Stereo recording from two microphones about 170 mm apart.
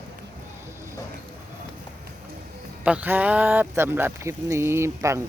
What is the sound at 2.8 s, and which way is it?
Speech, 10° right (ahead or behind).